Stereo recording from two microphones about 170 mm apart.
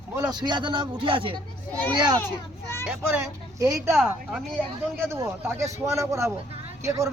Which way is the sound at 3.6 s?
20° right (ahead or behind).